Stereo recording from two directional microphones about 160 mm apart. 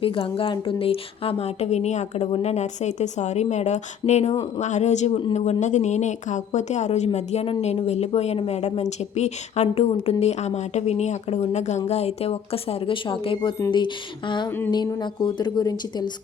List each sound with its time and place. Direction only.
0.0 s a woman's voice: 35° left (ahead or behind)